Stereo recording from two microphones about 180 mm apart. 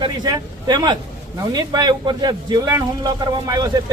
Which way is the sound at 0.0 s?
20° right (ahead or behind).